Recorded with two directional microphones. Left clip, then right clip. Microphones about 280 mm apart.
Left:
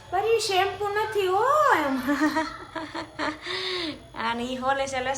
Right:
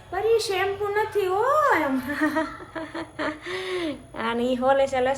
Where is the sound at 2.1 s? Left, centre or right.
Centre.